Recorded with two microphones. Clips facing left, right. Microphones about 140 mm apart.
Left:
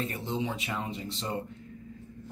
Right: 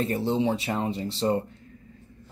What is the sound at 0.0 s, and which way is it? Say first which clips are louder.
Speech: right 8 dB; 35° right (ahead or behind).